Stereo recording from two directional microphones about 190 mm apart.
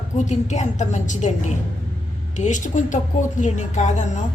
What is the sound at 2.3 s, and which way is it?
A woman's voice, 40° left (ahead or behind).